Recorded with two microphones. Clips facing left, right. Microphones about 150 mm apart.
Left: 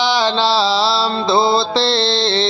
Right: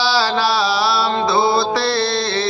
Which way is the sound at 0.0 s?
20° left (ahead or behind).